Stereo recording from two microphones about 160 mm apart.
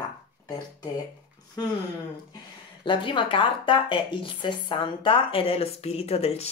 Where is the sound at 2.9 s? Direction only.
30° left (ahead or behind).